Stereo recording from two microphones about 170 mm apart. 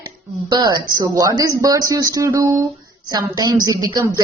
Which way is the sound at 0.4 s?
25° right (ahead or behind).